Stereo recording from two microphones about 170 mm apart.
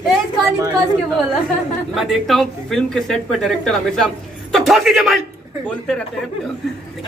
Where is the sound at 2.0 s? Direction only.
Centre (ahead or behind).